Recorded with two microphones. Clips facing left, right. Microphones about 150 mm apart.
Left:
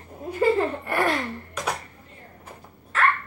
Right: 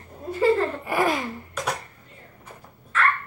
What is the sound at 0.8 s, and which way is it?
Speech, 5° right (ahead or behind).